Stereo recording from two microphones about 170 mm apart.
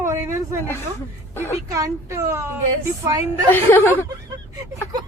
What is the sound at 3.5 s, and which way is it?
Speech, 10° left (ahead or behind).